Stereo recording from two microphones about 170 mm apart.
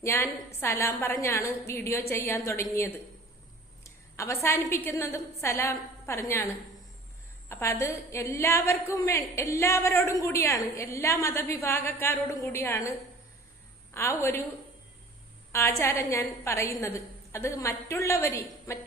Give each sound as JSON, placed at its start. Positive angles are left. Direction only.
{"t": 0.0, "sound": "a woman's voice", "side_deg": 15}
{"t": 3.8, "sound": "a woman's voice", "side_deg": 15}
{"t": 7.5, "sound": "a woman's voice", "side_deg": 15}
{"t": 13.9, "sound": "a woman's voice", "side_deg": 15}
{"t": 15.5, "sound": "a woman's voice", "side_deg": 15}